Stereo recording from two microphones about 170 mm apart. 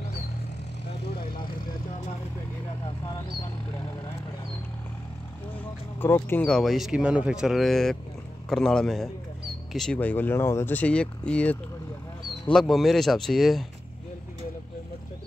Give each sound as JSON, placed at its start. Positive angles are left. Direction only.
{"t": 5.9, "sound": "speech", "side_deg": 10}
{"t": 12.5, "sound": "speech", "side_deg": 0}